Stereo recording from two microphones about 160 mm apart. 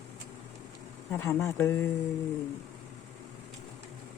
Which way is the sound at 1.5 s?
15° left (ahead or behind).